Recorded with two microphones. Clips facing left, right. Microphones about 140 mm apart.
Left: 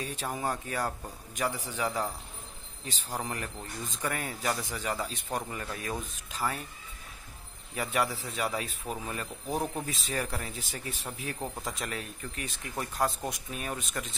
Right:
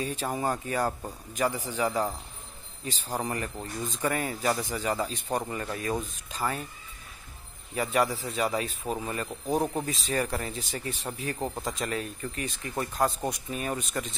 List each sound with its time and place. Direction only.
0.0 s a man's voice: centre (ahead or behind)
7.7 s a man's voice: centre (ahead or behind)
9.5 s speech: 20° right (ahead or behind)
9.8 s a man's voice: centre (ahead or behind)